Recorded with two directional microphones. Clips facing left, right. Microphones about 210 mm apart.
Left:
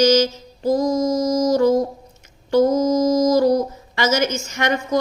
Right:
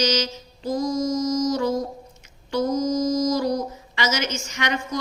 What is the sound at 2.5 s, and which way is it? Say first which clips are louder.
Mantra: left 8 dB; 50° left (ahead or behind).